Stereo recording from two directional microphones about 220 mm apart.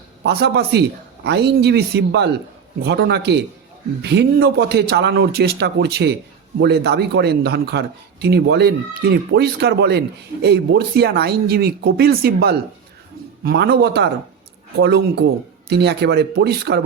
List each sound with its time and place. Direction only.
0.2 s a man's voice: 50° right (ahead or behind)